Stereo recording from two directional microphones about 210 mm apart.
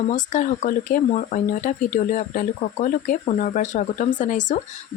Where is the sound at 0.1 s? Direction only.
35° left (ahead or behind).